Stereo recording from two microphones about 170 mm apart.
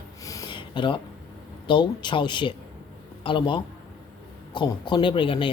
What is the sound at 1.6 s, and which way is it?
Speech, 30° left (ahead or behind).